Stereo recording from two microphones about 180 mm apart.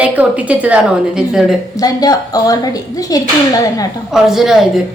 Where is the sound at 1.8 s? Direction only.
20° left (ahead or behind).